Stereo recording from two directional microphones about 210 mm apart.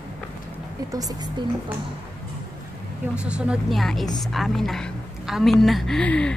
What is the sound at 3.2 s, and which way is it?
A woman's voice, 5° right (ahead or behind).